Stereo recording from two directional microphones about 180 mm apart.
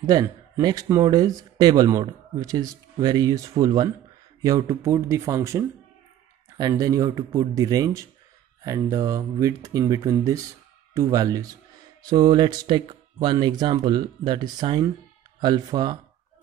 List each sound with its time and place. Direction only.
0.1 s speech: 20° right (ahead or behind)